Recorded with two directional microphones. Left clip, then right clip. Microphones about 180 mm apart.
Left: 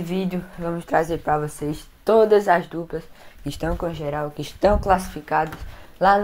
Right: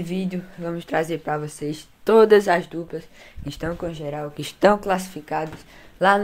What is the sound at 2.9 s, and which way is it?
Speech, centre (ahead or behind).